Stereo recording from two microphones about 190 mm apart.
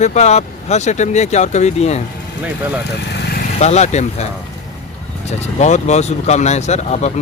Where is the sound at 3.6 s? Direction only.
35° left (ahead or behind).